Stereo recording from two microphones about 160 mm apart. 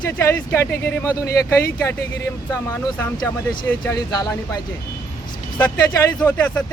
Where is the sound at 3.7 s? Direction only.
20° left (ahead or behind).